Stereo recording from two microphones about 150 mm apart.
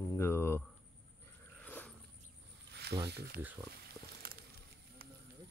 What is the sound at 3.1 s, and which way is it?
Speech, 90° right.